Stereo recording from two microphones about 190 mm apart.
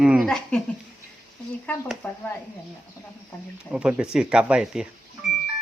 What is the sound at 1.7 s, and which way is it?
Speech, 10° left (ahead or behind).